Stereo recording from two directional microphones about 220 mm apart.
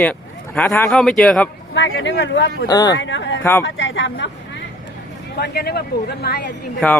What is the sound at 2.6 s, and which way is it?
Speech, 15° left (ahead or behind).